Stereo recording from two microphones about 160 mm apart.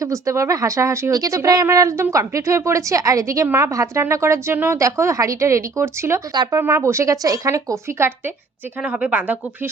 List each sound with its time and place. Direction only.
0.0 s speech: 20° right (ahead or behind)